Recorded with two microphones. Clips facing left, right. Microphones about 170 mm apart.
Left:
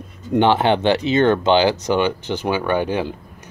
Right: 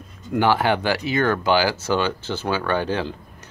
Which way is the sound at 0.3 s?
25° left (ahead or behind).